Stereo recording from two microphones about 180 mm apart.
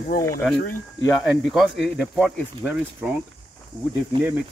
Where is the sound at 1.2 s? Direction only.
Centre (ahead or behind).